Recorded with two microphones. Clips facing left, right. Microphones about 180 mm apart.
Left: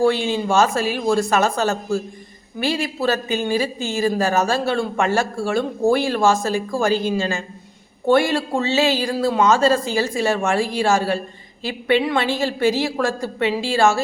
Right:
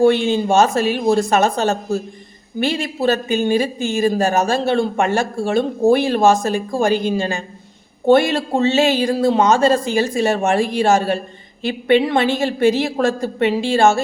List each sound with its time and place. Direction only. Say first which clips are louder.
0.0 s a woman's voice: right 4 dB; 20° right (ahead or behind)